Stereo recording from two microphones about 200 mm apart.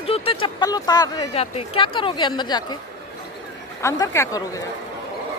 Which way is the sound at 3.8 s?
15° left (ahead or behind).